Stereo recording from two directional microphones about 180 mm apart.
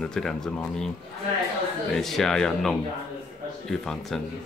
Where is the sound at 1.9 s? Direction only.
Centre (ahead or behind).